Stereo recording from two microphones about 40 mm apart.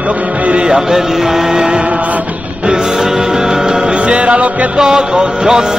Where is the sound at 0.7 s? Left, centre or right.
Centre; by 4.7 s right.